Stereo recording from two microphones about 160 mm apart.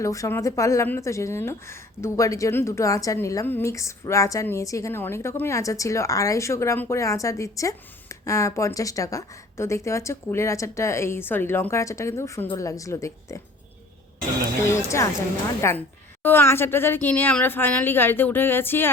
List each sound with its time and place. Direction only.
0.0 s a woman's voice: 20° left (ahead or behind)
14.6 s speech: 15° left (ahead or behind)